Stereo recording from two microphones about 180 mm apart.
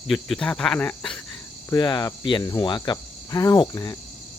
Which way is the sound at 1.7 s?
25° left (ahead or behind).